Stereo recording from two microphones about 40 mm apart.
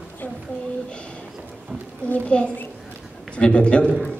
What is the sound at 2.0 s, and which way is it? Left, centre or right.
A child's voice, left.